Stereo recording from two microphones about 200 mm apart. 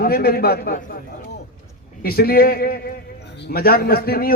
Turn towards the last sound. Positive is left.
turn(degrees=50)  # may be behind; listen again after turning